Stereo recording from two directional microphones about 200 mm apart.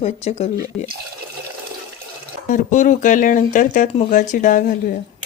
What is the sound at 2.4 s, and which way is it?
Speech, 40° left (ahead or behind).